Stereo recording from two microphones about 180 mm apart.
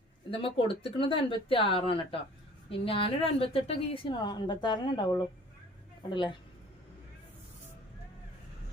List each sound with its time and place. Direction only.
0.3 s a woman's voice: 30° left (ahead or behind)